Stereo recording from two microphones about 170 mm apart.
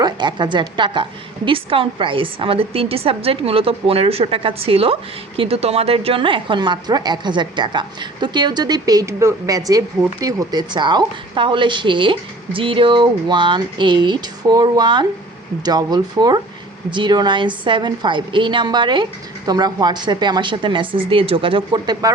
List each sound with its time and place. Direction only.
0.0 s a woman's voice: 25° right (ahead or behind)